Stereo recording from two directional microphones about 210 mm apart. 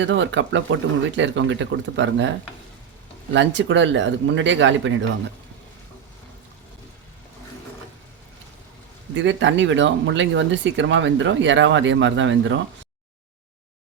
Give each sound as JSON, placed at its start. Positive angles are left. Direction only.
{"t": 0.0, "sound": "speech", "side_deg": -60}
{"t": 3.3, "sound": "speech", "side_deg": -60}
{"t": 9.1, "sound": "speech", "side_deg": -60}